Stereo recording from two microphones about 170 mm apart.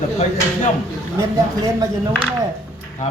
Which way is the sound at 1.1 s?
20° right (ahead or behind).